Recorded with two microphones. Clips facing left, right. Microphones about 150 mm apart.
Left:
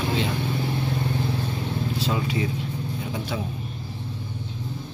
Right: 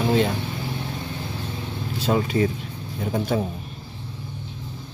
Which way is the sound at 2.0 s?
50° right (ahead or behind).